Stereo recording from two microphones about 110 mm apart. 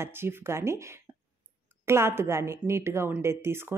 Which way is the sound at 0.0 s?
20° right (ahead or behind).